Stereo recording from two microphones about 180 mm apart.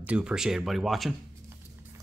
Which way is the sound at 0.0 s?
5° right (ahead or behind).